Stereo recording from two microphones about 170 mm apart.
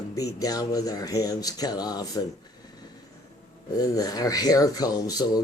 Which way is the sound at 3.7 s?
20° left (ahead or behind).